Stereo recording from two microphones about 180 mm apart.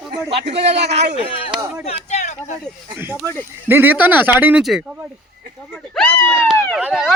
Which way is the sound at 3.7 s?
10° right (ahead or behind).